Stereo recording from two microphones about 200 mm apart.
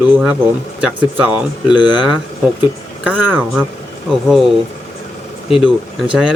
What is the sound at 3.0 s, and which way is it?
Speech, 10° right (ahead or behind).